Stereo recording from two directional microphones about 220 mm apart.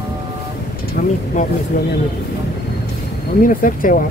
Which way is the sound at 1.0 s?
40° left (ahead or behind).